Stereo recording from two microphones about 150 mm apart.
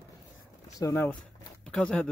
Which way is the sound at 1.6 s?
5° left (ahead or behind).